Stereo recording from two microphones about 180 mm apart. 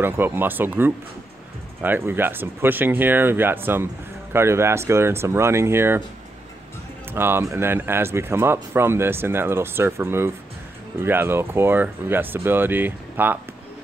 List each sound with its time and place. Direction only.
0.0 s speech: 10° right (ahead or behind)
7.2 s speech: 10° right (ahead or behind)